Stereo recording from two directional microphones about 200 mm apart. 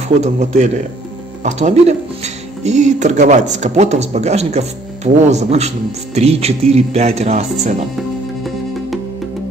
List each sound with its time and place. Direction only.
0.2 s speech: 35° right (ahead or behind)